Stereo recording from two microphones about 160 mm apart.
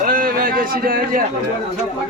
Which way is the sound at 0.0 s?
60° right (ahead or behind).